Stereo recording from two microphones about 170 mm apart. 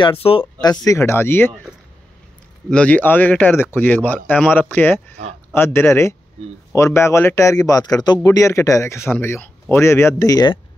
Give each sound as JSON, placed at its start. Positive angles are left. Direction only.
{"t": 0.2, "sound": "a man's voice", "side_deg": 30}
{"t": 2.7, "sound": "a man's voice", "side_deg": 10}